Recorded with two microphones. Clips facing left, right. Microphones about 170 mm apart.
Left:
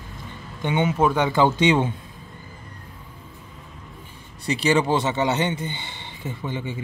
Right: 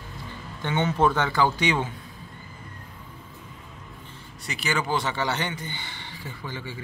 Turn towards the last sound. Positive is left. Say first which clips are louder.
# left 6 dB
turn(degrees=20)  # may be behind; listen again after turning